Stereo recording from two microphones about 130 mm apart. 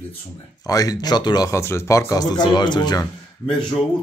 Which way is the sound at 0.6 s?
30° left (ahead or behind).